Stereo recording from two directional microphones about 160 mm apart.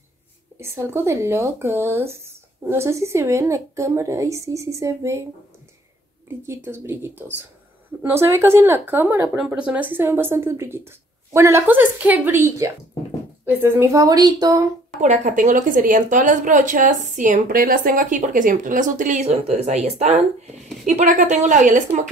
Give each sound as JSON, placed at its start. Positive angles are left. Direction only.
{"t": 0.6, "sound": "speech", "side_deg": -15}
{"t": 6.4, "sound": "speech", "side_deg": -15}
{"t": 15.0, "sound": "a woman's voice", "side_deg": -50}